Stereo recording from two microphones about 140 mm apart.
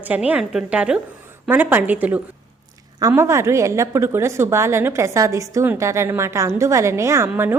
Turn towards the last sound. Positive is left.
turn(degrees=-15)  # may be behind; listen again after turning